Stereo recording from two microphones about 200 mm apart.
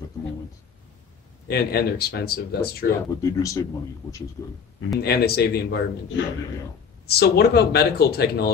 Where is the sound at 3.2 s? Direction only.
15° left (ahead or behind).